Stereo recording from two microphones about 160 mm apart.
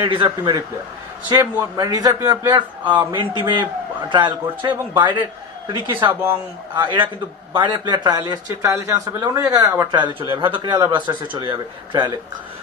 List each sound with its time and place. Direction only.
0.0 s a man's voice: 30° right (ahead or behind)
1.4 s speech: 20° right (ahead or behind)
2.9 s speech: 10° right (ahead or behind)
3.2 s a man's voice: 30° right (ahead or behind)
5.9 s speech: 15° right (ahead or behind)
6.7 s a man's voice: 30° right (ahead or behind)